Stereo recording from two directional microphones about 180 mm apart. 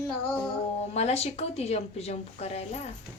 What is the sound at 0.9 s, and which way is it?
A woman's voice, 35° left (ahead or behind).